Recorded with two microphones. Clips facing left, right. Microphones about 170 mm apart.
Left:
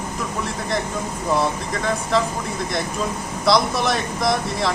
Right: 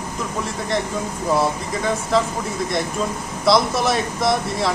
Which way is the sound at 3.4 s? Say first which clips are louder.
Right 1 dB; centre (ahead or behind).